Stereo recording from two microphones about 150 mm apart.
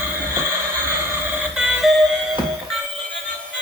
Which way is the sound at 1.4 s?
5° right (ahead or behind).